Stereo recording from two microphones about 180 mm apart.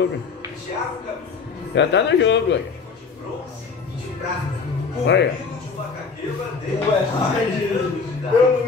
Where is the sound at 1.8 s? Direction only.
80° left.